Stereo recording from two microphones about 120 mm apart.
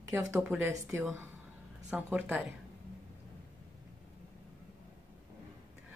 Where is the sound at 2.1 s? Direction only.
10° right (ahead or behind).